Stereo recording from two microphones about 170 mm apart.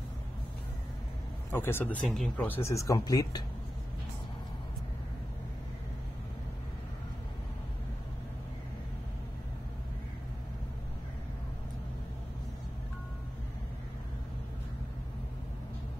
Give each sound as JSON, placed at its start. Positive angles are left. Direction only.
{"t": 1.5, "sound": "speech", "side_deg": 15}